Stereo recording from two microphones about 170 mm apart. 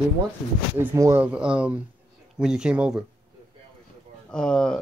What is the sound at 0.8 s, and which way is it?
Speech, 15° right (ahead or behind).